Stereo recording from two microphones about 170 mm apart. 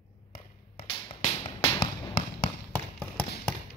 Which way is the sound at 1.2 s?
30° left (ahead or behind).